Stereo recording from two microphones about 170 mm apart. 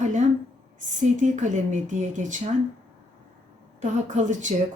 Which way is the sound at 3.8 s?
45° right (ahead or behind).